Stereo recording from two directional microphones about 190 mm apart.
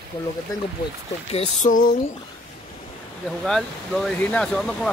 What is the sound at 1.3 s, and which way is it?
Speech, 40° left (ahead or behind).